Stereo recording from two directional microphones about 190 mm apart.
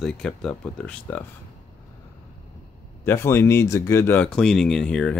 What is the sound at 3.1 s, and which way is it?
Speech, 15° left (ahead or behind).